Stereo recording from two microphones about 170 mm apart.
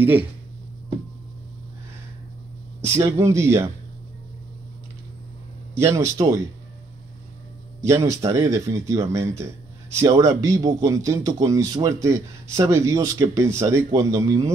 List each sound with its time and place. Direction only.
0.0 s speech: 10° right (ahead or behind)
3.1 s speech: 15° right (ahead or behind)
5.8 s speech: 15° right (ahead or behind)
7.9 s speech: 20° right (ahead or behind)